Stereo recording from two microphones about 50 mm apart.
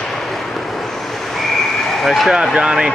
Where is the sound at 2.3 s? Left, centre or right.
Centre.